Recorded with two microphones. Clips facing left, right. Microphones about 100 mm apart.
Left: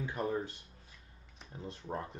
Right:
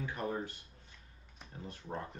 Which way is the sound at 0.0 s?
20° left (ahead or behind).